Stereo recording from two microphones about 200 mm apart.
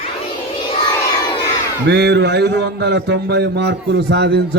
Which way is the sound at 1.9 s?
55° right (ahead or behind).